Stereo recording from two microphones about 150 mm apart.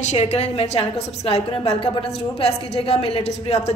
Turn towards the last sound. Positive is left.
turn(degrees=40)  # may be behind; listen again after turning